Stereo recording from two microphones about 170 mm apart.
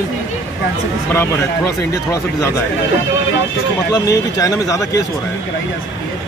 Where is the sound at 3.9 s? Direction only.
20° left (ahead or behind).